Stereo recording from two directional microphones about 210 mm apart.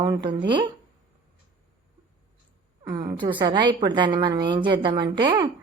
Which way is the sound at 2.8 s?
20° right (ahead or behind).